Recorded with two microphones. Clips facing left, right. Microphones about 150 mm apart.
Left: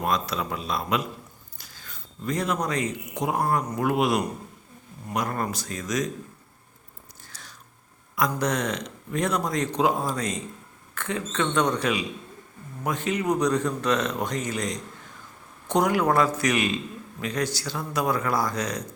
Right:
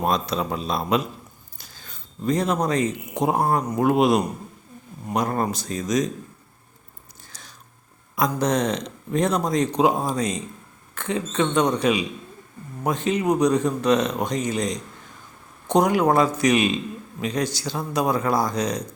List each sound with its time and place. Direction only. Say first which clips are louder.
0.0 s a man's voice: right 3 dB; 25° right (ahead or behind)
7.3 s biting: right 1 dB; 20° right (ahead or behind)
8.1 s a man's voice: right 4 dB; 20° right (ahead or behind)
13.2 s a man's voice: right 4 dB; 15° right (ahead or behind)